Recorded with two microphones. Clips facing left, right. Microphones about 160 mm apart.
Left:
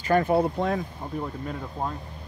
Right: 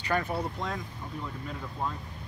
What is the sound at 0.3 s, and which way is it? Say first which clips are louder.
Speech: left 10 dB; 60° left (ahead or behind).